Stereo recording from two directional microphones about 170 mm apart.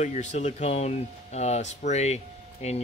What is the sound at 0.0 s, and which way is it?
Speech, 45° left (ahead or behind).